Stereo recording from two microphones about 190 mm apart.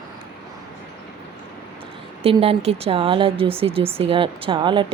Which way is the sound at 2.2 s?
30° right (ahead or behind).